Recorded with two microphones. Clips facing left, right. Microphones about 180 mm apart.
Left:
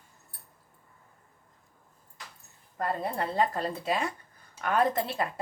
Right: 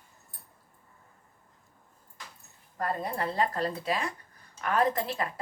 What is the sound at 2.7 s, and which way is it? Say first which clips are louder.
Speech: left 1 dB; 20° left (ahead or behind).